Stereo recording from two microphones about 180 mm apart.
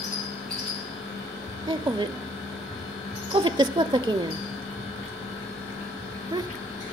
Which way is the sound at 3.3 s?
25° right (ahead or behind).